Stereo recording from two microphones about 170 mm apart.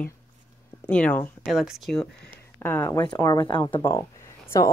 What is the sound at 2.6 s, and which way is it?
Speech, 15° left (ahead or behind).